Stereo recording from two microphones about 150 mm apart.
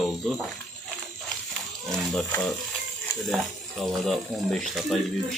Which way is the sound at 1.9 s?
Centre (ahead or behind).